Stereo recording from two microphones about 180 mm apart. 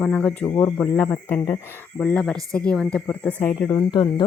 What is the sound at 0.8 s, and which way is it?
Speech, 10° left (ahead or behind).